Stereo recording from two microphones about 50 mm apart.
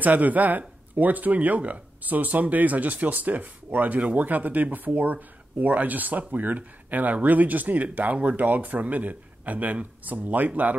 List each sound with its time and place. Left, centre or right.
0.0 s speech: right